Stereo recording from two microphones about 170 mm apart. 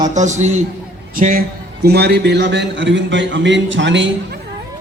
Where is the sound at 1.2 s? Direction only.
55° right (ahead or behind); by 4.1 s 90° right.